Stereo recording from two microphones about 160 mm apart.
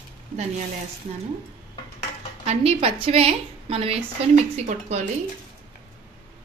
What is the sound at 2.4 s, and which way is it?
A woman's voice, 40° right (ahead or behind).